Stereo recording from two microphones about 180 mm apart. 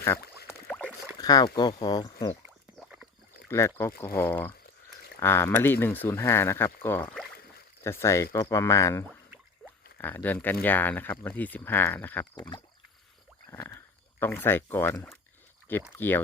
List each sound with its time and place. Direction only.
0.4 s rowboat: 10° left (ahead or behind)
1.2 s speech: 20° left (ahead or behind)
2.7 s rowboat: centre (ahead or behind)
3.5 s speech: 15° left (ahead or behind)
12.4 s speech: 25° left (ahead or behind)
13.5 s a sound: 15° left (ahead or behind)
16.0 s speech: 10° left (ahead or behind)